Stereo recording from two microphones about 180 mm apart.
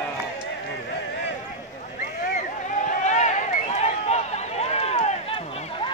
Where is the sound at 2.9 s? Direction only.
40° left (ahead or behind).